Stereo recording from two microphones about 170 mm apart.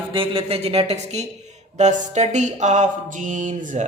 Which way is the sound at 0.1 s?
35° right (ahead or behind).